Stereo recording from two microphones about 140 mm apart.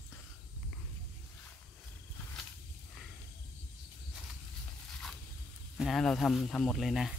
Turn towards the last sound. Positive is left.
turn(degrees=0)  # may be behind; listen again after turning